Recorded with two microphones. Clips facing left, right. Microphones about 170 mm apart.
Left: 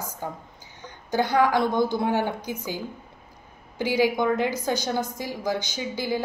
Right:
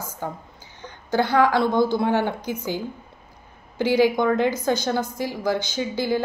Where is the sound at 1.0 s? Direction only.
15° left (ahead or behind).